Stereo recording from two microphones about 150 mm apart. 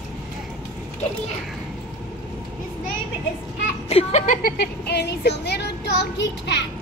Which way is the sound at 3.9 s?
50° left (ahead or behind).